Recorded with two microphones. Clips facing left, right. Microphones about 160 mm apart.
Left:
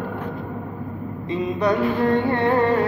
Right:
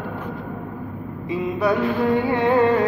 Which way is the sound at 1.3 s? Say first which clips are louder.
Even; 10° right (ahead or behind).